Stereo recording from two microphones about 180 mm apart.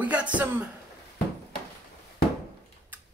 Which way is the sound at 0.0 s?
5° right (ahead or behind).